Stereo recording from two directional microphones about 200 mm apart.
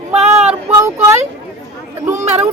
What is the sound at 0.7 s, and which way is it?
Speech, 15° right (ahead or behind).